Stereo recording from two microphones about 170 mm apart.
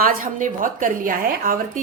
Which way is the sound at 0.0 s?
55° right (ahead or behind).